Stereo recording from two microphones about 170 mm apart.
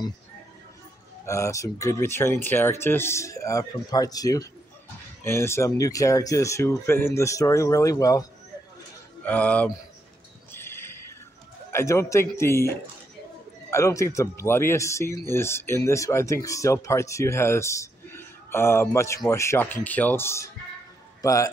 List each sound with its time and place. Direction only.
1.2 s speech: 15° left (ahead or behind)
9.2 s speech: 10° left (ahead or behind)
10.5 s a sound: 15° left (ahead or behind)
11.7 s a man's voice: 15° left (ahead or behind)